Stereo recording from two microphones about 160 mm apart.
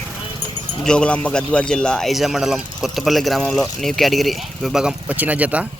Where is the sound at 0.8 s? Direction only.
5° left (ahead or behind).